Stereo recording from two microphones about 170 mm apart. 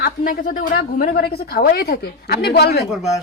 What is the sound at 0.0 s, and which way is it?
A woman's voice, 55° left (ahead or behind).